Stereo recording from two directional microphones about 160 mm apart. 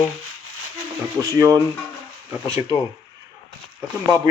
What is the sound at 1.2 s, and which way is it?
Speech, 20° right (ahead or behind).